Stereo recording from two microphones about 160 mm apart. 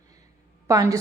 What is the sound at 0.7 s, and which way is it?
Speech, 20° right (ahead or behind).